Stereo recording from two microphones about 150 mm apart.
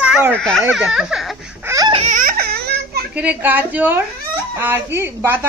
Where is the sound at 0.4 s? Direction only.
5° left (ahead or behind).